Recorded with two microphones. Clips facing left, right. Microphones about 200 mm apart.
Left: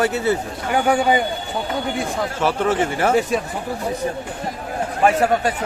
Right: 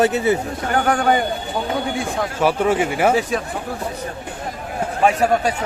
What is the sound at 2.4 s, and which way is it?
Speech, 10° right (ahead or behind).